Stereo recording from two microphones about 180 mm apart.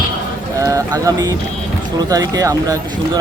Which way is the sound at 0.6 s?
20° right (ahead or behind).